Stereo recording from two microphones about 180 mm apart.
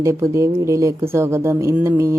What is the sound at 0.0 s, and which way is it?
Speech, 15° right (ahead or behind).